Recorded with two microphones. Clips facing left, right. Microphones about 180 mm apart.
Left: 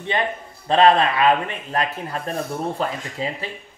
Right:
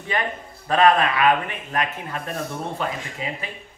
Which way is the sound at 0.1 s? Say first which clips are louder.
Left 2 dB; 25° left (ahead or behind).